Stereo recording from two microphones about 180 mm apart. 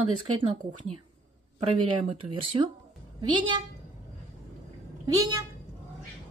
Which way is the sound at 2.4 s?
25° right (ahead or behind).